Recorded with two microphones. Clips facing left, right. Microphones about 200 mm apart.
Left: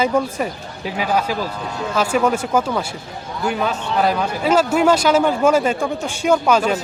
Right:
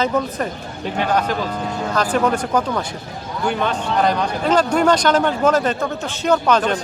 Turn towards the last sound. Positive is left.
turn(degrees=10)  # may be behind; listen again after turning